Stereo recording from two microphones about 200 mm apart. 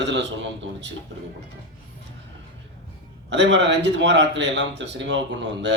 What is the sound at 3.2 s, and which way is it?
A man's voice, 60° right (ahead or behind).